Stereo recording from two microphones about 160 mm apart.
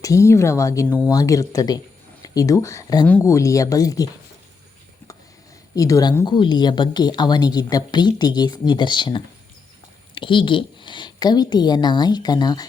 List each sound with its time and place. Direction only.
0.0 s a woman's voice: 20° left (ahead or behind)
5.7 s a woman's voice: 20° left (ahead or behind)